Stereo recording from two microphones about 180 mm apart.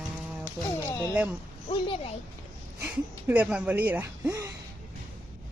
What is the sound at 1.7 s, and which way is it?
Speech, 30° left (ahead or behind).